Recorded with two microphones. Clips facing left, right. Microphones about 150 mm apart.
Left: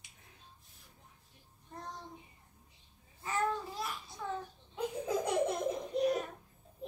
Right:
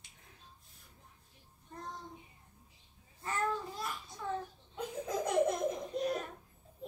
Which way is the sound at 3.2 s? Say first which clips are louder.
Left 1 dB; centre (ahead or behind).